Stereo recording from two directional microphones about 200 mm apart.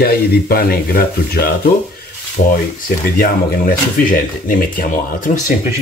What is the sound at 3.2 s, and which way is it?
Speech, 45° left (ahead or behind).